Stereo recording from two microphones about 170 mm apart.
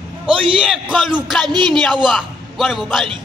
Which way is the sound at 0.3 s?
5° right (ahead or behind).